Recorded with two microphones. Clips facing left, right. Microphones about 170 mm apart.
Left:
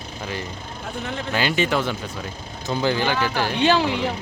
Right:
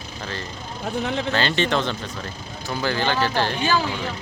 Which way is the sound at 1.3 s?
10° left (ahead or behind).